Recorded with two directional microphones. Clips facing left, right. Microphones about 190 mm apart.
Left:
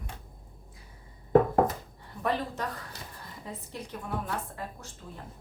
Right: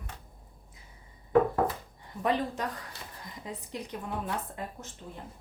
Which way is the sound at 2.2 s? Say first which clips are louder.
Right 1 dB; 15° right (ahead or behind).